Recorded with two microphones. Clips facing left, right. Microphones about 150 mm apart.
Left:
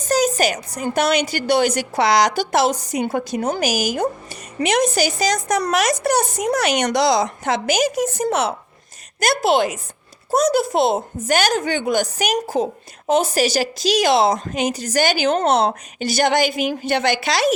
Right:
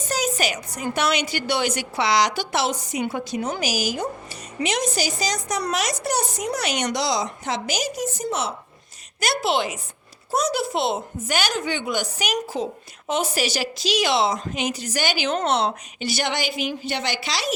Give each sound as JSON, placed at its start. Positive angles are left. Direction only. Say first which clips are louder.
{"t": 0.0, "sound": "a woman's voice", "louder": "left 7 dB", "side_deg": 40}
{"t": 9.2, "sound": "a woman's voice", "louder": "left 6 dB", "side_deg": 45}